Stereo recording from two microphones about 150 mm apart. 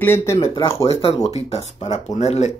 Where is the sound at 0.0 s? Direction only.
15° left (ahead or behind).